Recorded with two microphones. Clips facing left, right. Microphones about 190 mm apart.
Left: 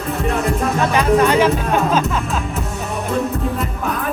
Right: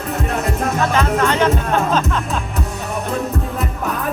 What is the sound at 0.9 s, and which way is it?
Music, 10° left (ahead or behind).